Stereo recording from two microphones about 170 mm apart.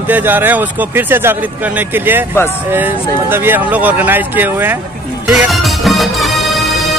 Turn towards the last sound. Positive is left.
turn(degrees=0)  # may be behind; listen again after turning